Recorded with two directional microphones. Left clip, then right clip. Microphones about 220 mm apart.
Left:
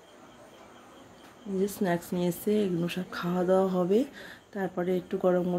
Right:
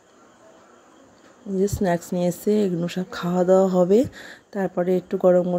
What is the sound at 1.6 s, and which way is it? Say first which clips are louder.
Speech: right 7 dB; 30° right (ahead or behind).